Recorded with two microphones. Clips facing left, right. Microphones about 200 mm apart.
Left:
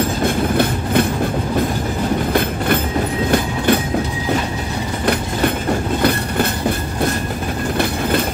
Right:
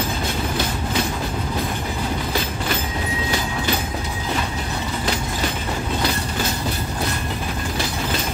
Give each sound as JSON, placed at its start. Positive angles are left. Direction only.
{"t": 0.2, "sound": "train", "side_deg": 55}
{"t": 3.3, "sound": "a sound", "side_deg": 55}
{"t": 6.0, "sound": "train", "side_deg": 55}